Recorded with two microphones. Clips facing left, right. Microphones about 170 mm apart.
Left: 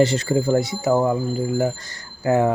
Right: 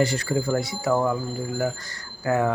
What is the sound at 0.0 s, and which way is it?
Speech, 25° left (ahead or behind).